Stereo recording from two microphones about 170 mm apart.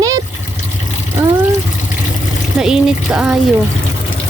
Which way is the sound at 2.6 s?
5° right (ahead or behind).